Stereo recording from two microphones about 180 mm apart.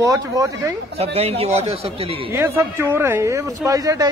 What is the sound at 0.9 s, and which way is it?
Speech, 35° right (ahead or behind).